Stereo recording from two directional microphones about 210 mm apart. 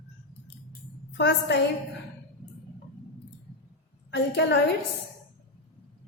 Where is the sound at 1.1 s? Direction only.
55° left (ahead or behind).